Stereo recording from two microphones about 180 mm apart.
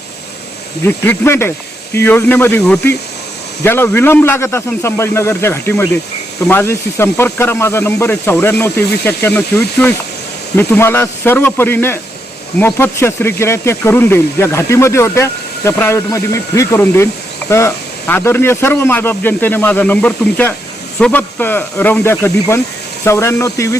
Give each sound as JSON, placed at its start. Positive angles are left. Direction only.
{"t": 0.9, "sound": "speech", "side_deg": 10}